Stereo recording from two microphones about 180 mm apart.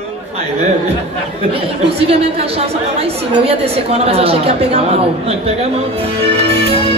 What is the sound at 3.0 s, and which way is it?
A woman's voice, 35° right (ahead or behind).